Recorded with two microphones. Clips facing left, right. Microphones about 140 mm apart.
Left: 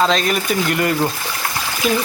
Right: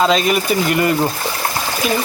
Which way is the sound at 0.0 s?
5° right (ahead or behind).